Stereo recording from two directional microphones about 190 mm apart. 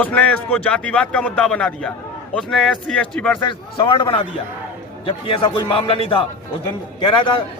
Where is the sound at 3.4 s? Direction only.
25° left (ahead or behind).